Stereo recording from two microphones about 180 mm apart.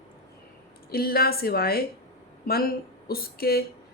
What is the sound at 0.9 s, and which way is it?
A woman's voice, 55° left (ahead or behind).